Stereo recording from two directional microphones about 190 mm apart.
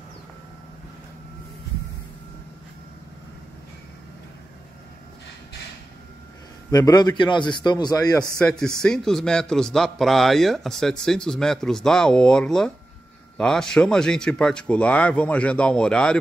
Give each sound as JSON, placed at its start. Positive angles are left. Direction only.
{"t": 6.7, "sound": "a man's voice", "side_deg": 20}
{"t": 8.4, "sound": "a man's voice", "side_deg": 5}